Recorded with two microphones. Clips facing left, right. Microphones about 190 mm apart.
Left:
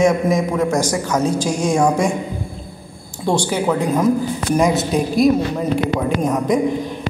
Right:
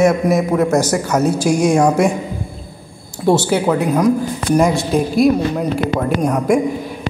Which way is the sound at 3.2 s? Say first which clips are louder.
Right 4 dB; 5° right (ahead or behind).